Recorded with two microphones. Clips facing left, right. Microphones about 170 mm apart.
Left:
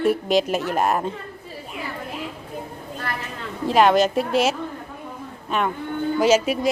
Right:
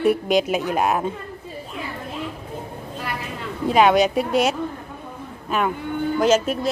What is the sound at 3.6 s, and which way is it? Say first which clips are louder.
A woman's voice: right 1 dB; centre (ahead or behind).